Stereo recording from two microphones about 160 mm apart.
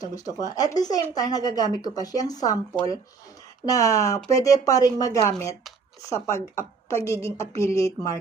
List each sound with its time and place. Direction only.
0.0 s a woman's voice: 20° left (ahead or behind)
3.7 s a woman's voice: 20° left (ahead or behind)